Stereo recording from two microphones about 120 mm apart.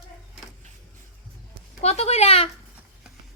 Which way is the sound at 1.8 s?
60° left (ahead or behind).